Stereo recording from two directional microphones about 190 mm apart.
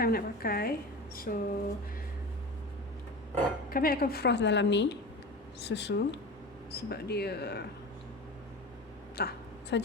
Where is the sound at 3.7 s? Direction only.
50° left (ahead or behind).